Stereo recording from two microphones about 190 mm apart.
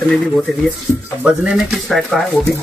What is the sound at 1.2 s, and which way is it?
Speech, 5° right (ahead or behind).